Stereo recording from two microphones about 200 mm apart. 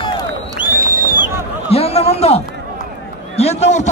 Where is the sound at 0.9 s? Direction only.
40° right (ahead or behind).